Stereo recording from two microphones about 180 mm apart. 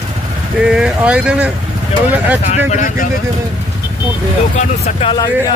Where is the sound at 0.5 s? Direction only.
5° right (ahead or behind).